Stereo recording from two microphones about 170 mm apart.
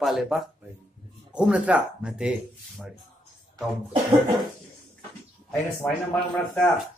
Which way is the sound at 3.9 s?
30° right (ahead or behind).